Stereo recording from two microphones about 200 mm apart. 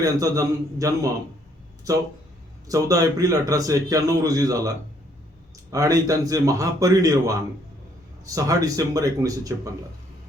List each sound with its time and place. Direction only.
0.0 s a man's voice: 15° right (ahead or behind)
5.7 s a man's voice: 15° right (ahead or behind)